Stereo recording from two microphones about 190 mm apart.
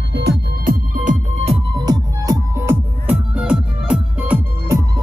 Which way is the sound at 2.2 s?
15° right (ahead or behind).